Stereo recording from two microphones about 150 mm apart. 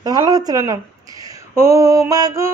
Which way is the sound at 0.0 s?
25° right (ahead or behind).